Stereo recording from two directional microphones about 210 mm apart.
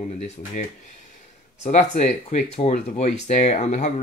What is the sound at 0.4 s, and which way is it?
Speech, 35° left (ahead or behind).